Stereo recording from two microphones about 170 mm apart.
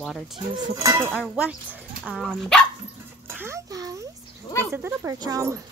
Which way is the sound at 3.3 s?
15° right (ahead or behind).